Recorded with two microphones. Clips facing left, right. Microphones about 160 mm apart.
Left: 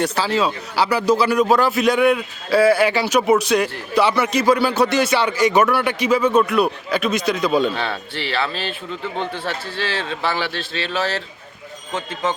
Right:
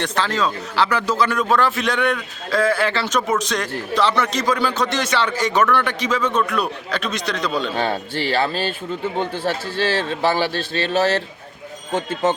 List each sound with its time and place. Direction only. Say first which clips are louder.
0.0 s a man's voice: left 2 dB; 10° left (ahead or behind)
7.8 s a man's voice: right 4 dB; 45° right (ahead or behind)